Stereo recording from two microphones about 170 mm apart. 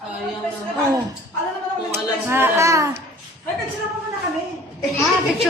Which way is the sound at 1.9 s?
15° right (ahead or behind).